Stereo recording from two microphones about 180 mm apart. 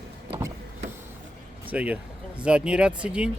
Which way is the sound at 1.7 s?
10° right (ahead or behind).